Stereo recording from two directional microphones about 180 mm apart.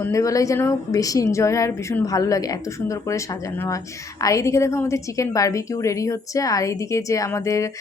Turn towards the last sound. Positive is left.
turn(degrees=15)  # may be behind; listen again after turning